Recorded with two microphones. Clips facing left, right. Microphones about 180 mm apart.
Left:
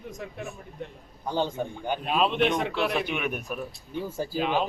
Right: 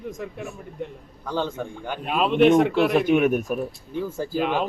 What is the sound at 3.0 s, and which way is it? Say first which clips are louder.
Speech: right 10 dB; 45° right (ahead or behind).